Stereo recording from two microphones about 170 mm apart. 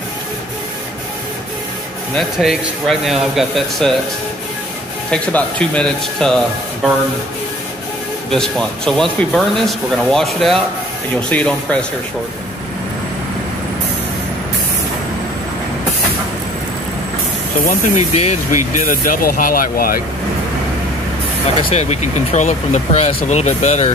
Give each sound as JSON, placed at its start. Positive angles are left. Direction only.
{"t": 2.1, "sound": "speech", "side_deg": 0}
{"t": 5.1, "sound": "speech", "side_deg": 5}
{"t": 8.3, "sound": "speech", "side_deg": 5}
{"t": 17.6, "sound": "speech", "side_deg": 50}
{"t": 18.9, "sound": "speech", "side_deg": 55}
{"t": 21.6, "sound": "speech", "side_deg": 40}